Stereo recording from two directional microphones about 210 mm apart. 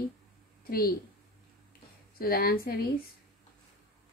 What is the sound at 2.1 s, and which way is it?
Speech, 45° left (ahead or behind).